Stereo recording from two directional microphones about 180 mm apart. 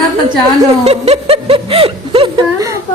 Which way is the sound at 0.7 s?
35° right (ahead or behind).